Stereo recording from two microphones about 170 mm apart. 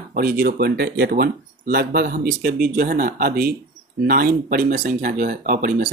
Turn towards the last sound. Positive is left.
turn(degrees=-50)  # may be behind; listen again after turning